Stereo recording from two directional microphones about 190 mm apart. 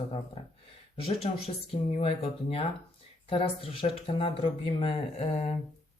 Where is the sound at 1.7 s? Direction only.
30° left (ahead or behind).